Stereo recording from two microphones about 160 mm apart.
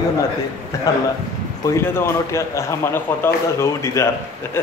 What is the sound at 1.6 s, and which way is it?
A man's voice, 15° left (ahead or behind).